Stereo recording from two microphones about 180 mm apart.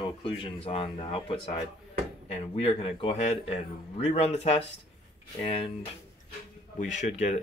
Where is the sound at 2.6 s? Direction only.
30° left (ahead or behind).